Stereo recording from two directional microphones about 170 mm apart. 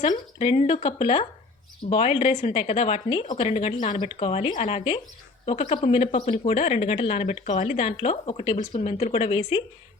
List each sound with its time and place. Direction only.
0.1 s speech: 40° left (ahead or behind)